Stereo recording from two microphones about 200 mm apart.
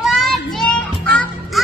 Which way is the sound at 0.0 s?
Centre (ahead or behind).